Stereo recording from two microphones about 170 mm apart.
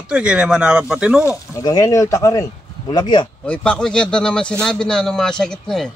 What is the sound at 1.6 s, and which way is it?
Speech, 20° left (ahead or behind).